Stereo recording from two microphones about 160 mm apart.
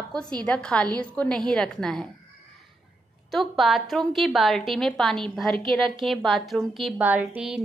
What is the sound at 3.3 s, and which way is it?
A woman's voice, centre (ahead or behind).